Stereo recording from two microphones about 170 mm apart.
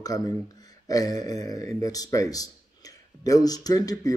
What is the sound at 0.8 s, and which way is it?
Speech, 20° left (ahead or behind).